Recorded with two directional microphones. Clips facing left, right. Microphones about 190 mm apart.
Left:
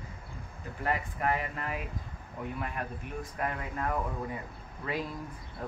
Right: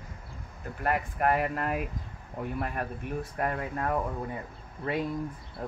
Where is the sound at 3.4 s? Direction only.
45° right (ahead or behind).